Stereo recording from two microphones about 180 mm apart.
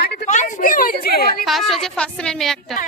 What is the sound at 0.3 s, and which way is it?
Speech, 40° left (ahead or behind).